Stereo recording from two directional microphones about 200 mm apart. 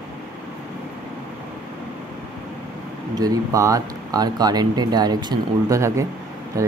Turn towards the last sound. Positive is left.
turn(degrees=-15)  # may be behind; listen again after turning